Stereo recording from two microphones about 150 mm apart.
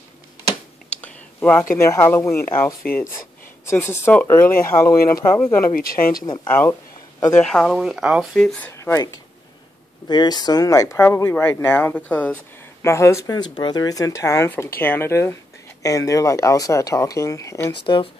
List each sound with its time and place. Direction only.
1.0 s speech: 10° left (ahead or behind)
5.7 s speech: 70° left (ahead or behind)
6.5 s speech: 15° left (ahead or behind)
7.4 s speech: 5° left (ahead or behind)
8.7 s speech: 20° left (ahead or behind)